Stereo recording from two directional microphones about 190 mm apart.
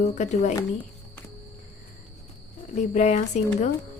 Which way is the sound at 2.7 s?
40° left (ahead or behind).